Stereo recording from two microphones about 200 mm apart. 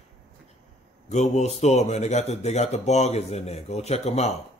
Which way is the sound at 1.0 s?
35° left (ahead or behind).